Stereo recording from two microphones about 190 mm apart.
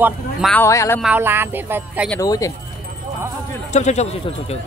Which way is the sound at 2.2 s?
20° left (ahead or behind).